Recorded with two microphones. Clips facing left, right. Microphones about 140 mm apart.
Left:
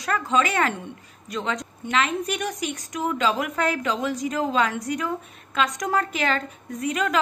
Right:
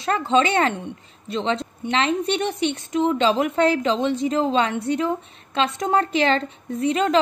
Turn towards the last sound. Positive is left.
turn(degrees=-30)  # may be behind; listen again after turning